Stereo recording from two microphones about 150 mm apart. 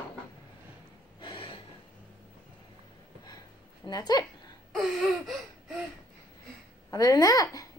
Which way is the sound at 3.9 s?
25° left (ahead or behind).